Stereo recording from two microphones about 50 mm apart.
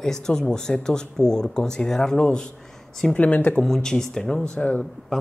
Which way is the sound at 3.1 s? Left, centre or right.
Left.